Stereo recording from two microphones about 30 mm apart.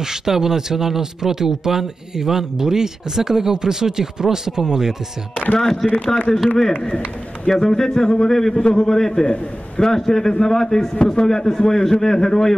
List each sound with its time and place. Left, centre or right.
0.0 s speech: centre
5.6 s a man's voice: centre
7.4 s a man's voice: centre
9.2 s a man's voice: left
9.8 s a man's voice: centre
11.0 s a man's voice: left